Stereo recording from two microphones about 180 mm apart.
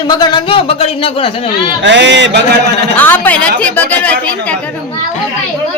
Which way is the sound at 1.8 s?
80° right.